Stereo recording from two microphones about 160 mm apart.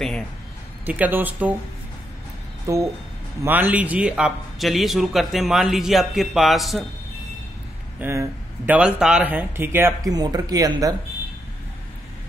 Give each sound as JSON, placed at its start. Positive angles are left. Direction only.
{"t": 0.8, "sound": "speech", "side_deg": -10}
{"t": 2.6, "sound": "a man's voice", "side_deg": -20}
{"t": 8.0, "sound": "speech", "side_deg": -15}